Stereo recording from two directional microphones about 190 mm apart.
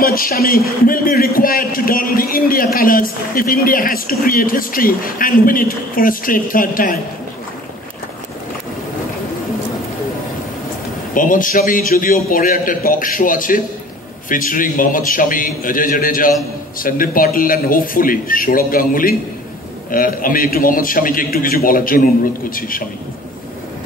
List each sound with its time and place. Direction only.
0.0 s a man's voice: 50° left (ahead or behind)
11.1 s a man's voice: 45° left (ahead or behind)